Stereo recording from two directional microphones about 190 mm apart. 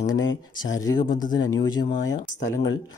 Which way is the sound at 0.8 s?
20° left (ahead or behind).